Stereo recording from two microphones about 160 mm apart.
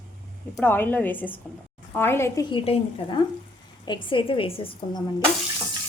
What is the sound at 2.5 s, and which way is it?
A woman's voice, 35° left (ahead or behind).